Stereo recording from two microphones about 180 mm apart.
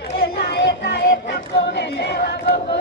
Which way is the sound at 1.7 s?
65° left (ahead or behind).